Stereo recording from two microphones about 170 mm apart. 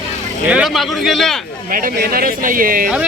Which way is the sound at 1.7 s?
55° right (ahead or behind).